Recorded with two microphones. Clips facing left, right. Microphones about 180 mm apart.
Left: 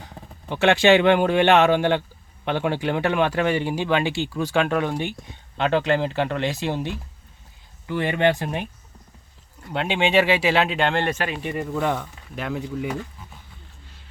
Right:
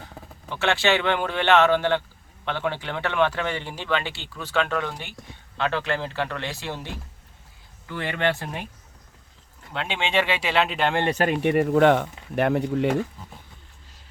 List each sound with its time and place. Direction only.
0.4 s speech: 15° left (ahead or behind)
9.7 s speech: 10° left (ahead or behind)
10.9 s speech: 20° right (ahead or behind)
11.2 s speech: 55° right (ahead or behind)